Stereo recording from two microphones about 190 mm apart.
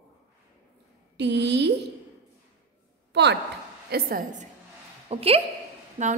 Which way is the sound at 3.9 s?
50° right (ahead or behind).